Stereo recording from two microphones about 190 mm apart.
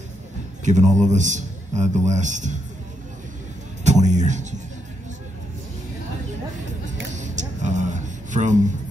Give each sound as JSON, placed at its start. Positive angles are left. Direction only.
{"t": 0.7, "sound": "a man's voice", "side_deg": -40}
{"t": 3.8, "sound": "music", "side_deg": -40}
{"t": 7.2, "sound": "a sound", "side_deg": -40}